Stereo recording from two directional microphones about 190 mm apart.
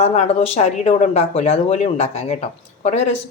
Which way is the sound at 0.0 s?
35° left (ahead or behind).